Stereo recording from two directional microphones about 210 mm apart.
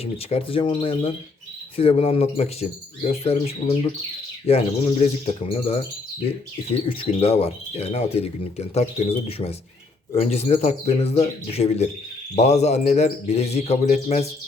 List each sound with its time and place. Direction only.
0.0 s speech: 30° left (ahead or behind)